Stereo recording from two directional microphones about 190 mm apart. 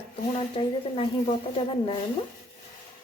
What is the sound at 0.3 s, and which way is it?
Speech, 30° left (ahead or behind).